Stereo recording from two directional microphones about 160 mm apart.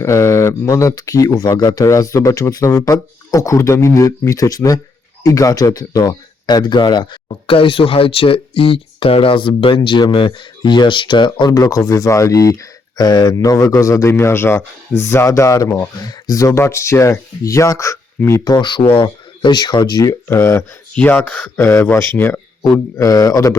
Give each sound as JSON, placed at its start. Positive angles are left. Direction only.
{"t": 0.0, "sound": "speech", "side_deg": 20}